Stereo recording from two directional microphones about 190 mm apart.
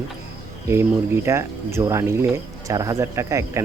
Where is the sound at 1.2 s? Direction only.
15° right (ahead or behind).